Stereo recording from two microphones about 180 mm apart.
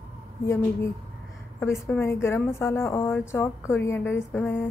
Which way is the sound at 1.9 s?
10° left (ahead or behind).